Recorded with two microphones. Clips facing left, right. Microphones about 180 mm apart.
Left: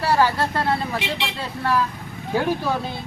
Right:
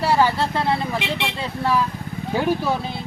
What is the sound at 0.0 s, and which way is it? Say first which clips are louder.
Speech: right 1 dB; 15° right (ahead or behind).